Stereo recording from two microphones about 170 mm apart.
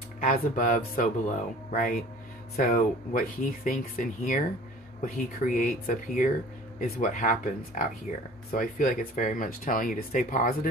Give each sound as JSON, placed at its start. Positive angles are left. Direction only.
{"t": 0.2, "sound": "speech", "side_deg": 50}